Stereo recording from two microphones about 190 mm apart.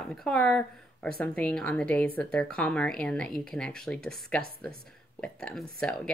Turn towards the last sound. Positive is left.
turn(degrees=5)  # may be behind; listen again after turning